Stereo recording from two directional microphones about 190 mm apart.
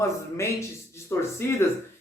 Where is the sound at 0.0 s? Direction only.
15° left (ahead or behind).